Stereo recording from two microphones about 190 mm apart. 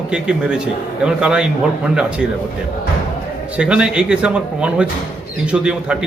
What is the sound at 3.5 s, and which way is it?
A man's voice, 5° right (ahead or behind).